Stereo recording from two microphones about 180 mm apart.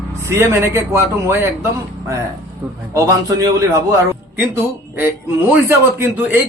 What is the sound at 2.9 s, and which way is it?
A man's voice, 20° right (ahead or behind).